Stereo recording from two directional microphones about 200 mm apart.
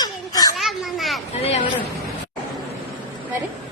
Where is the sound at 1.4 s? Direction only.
30° left (ahead or behind).